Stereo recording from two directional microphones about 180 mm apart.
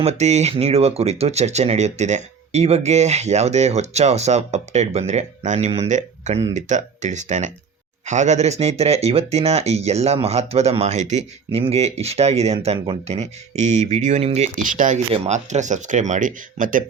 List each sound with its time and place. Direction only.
0.0 s speech: 40° right (ahead or behind)